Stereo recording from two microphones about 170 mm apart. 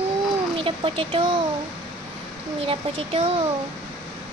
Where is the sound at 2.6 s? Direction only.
35° right (ahead or behind).